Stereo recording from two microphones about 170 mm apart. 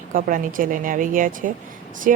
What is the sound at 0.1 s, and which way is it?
Speech, 55° right (ahead or behind).